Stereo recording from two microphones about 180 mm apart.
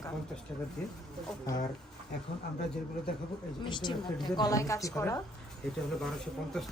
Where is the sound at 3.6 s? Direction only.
25° left (ahead or behind).